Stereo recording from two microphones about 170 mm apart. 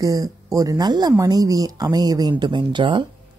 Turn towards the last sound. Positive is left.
turn(degrees=-30)  # may be behind; listen again after turning